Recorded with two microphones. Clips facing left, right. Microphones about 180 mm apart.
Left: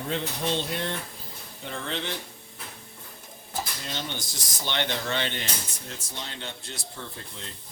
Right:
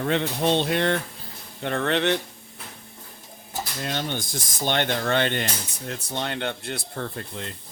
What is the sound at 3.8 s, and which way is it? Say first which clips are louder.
Speech: right 6 dB; 55° right (ahead or behind).